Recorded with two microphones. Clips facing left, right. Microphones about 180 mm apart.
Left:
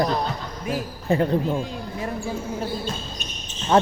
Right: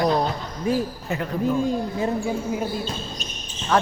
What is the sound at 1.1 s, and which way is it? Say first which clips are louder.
Speech: left 6 dB; 30° left (ahead or behind).